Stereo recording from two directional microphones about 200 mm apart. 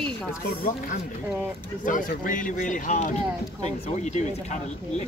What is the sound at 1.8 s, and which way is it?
Speech, 40° left (ahead or behind).